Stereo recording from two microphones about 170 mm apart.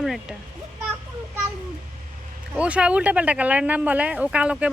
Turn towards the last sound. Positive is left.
turn(degrees=-5)  # may be behind; listen again after turning